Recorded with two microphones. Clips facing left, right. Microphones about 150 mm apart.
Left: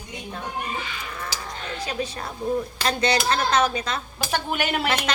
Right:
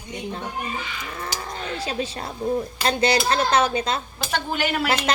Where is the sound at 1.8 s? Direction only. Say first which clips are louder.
Left 1 dB; 30° right (ahead or behind).